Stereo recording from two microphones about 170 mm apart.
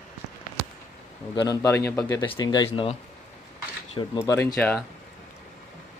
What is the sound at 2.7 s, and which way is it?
Speech, 35° left (ahead or behind).